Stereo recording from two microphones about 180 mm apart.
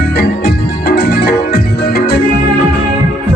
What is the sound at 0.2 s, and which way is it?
Music, 60° left (ahead or behind).